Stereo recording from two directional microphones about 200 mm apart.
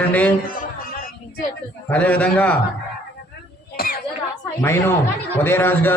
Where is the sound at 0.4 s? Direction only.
45° left (ahead or behind).